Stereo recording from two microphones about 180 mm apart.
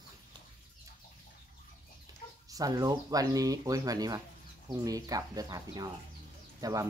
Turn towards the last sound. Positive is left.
turn(degrees=-20)  # may be behind; listen again after turning